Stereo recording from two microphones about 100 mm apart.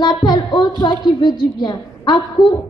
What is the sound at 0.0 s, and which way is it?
A woman's voice, 50° left (ahead or behind).